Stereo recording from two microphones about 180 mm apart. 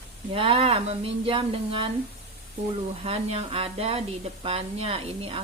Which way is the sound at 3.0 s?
30° right (ahead or behind).